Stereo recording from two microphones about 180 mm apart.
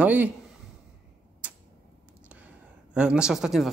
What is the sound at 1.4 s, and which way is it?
Tick-tock, 5° right (ahead or behind).